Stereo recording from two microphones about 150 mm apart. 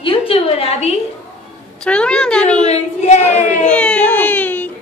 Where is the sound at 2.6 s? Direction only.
50° left (ahead or behind).